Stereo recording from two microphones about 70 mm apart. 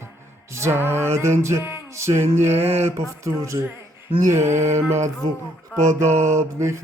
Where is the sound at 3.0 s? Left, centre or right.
Right.